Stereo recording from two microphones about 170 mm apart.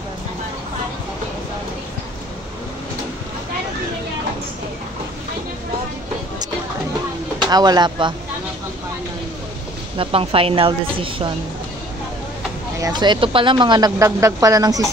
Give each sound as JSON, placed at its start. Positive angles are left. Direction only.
{"t": 7.4, "sound": "speech", "side_deg": -25}
{"t": 9.9, "sound": "speech", "side_deg": -35}
{"t": 12.8, "sound": "speech", "side_deg": -25}